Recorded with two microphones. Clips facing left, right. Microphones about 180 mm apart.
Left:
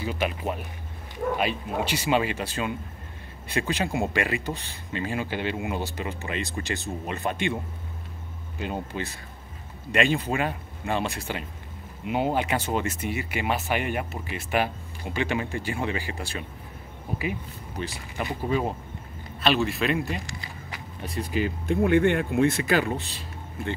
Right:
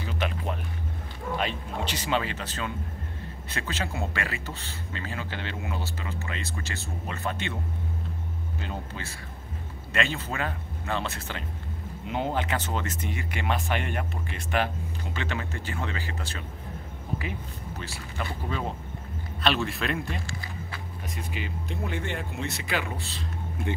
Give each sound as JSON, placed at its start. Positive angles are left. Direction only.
{"t": 0.2, "sound": "a man's voice", "side_deg": 10}
{"t": 1.4, "sound": "a man's voice", "side_deg": 10}
{"t": 8.5, "sound": "a man's voice", "side_deg": 15}
{"t": 17.7, "sound": "a man's voice", "side_deg": 15}
{"t": 19.4, "sound": "a man's voice", "side_deg": 0}
{"t": 20.2, "sound": "a sound", "side_deg": 15}
{"t": 21.0, "sound": "speech", "side_deg": 35}
{"t": 21.8, "sound": "speech", "side_deg": 55}
{"t": 22.9, "sound": "a man's voice", "side_deg": 15}